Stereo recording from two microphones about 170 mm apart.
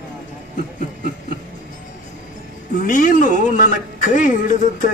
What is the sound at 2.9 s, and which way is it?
A man's voice, 50° left (ahead or behind).